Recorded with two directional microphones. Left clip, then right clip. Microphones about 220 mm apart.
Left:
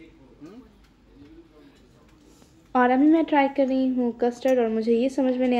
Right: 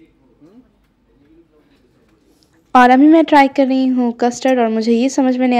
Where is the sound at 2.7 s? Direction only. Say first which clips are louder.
Right 11 dB; 45° right (ahead or behind).